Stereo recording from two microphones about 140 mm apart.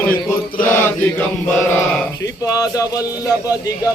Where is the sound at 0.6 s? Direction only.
15° left (ahead or behind).